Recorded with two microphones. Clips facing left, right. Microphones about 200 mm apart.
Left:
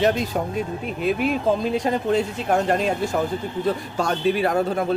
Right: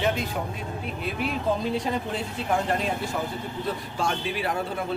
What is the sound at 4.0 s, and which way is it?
Speech, 40° left (ahead or behind).